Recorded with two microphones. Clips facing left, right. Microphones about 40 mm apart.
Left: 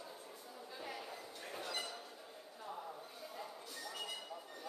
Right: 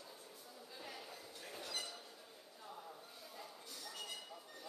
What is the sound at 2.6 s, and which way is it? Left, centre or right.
Chink, left.